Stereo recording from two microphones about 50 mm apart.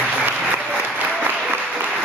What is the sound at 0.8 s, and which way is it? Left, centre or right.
Applause, right.